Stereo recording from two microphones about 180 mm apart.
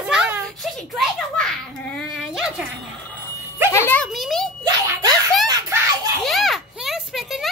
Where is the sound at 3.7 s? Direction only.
10° left (ahead or behind).